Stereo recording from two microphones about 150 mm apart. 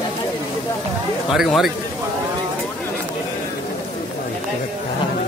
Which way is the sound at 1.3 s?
Centre (ahead or behind).